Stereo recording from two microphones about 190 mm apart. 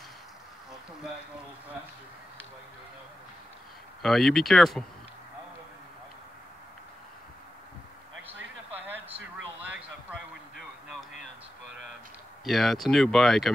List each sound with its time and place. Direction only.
4.0 s speech: centre (ahead or behind)
9.7 s a sound: 5° right (ahead or behind)
12.4 s speech: centre (ahead or behind)